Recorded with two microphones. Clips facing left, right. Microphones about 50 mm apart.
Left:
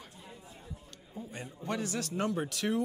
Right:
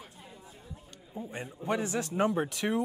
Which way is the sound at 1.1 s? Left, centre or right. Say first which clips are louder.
Right 4 dB; right.